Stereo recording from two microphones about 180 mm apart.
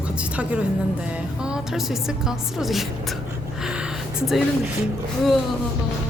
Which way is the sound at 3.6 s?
5° right (ahead or behind).